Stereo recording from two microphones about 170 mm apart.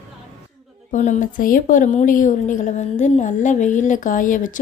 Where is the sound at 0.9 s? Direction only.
45° left (ahead or behind).